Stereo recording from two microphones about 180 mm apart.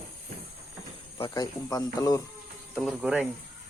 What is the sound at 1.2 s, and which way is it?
Speech, 20° left (ahead or behind).